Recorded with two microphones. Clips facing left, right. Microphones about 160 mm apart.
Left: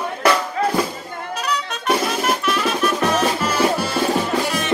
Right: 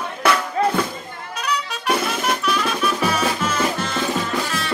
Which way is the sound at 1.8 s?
Centre (ahead or behind).